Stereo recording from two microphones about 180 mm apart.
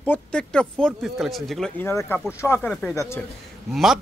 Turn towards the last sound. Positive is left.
turn(degrees=0)  # may be behind; listen again after turning